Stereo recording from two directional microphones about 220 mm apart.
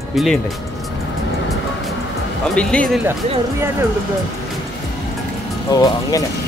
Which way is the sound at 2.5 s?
5° left (ahead or behind).